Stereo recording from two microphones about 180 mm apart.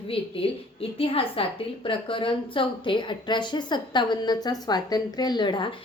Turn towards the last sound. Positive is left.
turn(degrees=25)  # may be behind; listen again after turning